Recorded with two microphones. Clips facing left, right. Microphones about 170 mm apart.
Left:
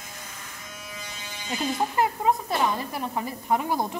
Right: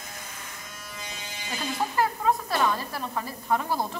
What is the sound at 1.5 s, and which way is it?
Speech, 20° left (ahead or behind).